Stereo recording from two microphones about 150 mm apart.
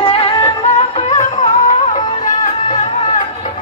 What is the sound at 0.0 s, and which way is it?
Music, 40° left (ahead or behind).